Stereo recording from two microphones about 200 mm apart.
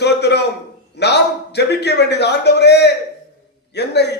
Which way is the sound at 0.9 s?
55° left (ahead or behind).